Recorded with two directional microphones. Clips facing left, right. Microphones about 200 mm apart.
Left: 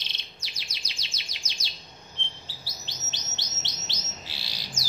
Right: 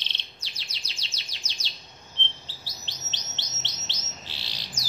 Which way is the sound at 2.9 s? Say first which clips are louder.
Left 1 dB; 10° left (ahead or behind).